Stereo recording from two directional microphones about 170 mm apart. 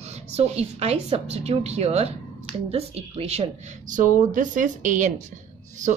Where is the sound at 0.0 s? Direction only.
40° right (ahead or behind).